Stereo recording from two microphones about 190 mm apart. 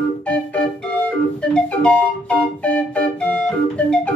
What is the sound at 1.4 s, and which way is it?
Organ, 5° left (ahead or behind).